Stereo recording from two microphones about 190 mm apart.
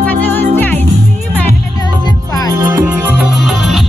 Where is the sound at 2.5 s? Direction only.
10° right (ahead or behind).